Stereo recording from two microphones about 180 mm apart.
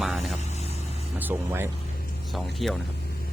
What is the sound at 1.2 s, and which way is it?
Speech, 10° right (ahead or behind).